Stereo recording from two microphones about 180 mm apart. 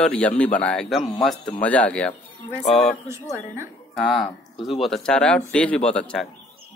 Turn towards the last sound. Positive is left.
turn(degrees=5)  # may be behind; listen again after turning